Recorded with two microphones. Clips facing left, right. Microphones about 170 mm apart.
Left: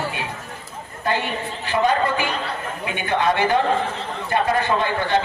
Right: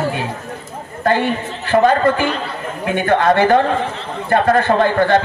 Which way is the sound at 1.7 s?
50° right (ahead or behind).